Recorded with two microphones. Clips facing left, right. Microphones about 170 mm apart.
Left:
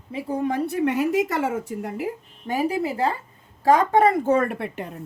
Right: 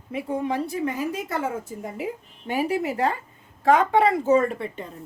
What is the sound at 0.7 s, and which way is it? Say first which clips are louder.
A woman's voice: left 5 dB; 70° left (ahead or behind).